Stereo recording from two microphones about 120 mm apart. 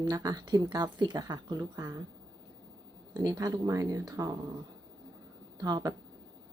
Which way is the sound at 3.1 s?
35° right (ahead or behind).